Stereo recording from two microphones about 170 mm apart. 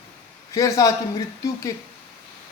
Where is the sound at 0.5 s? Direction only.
20° left (ahead or behind).